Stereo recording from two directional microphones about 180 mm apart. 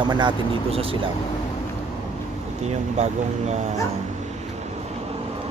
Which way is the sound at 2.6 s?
40° right (ahead or behind).